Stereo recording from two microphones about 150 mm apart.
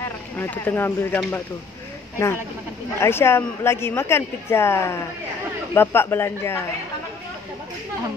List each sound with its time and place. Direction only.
0.4 s speech: 15° left (ahead or behind)
3.0 s speech: 15° left (ahead or behind)